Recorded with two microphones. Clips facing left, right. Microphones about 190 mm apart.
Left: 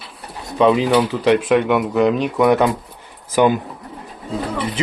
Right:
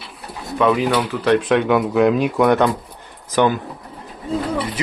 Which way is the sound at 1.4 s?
Centre (ahead or behind).